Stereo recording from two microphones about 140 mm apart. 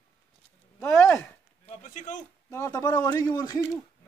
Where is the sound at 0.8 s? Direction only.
15° left (ahead or behind).